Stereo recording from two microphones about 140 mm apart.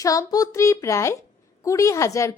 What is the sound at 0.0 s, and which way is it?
A woman's voice, 25° left (ahead or behind).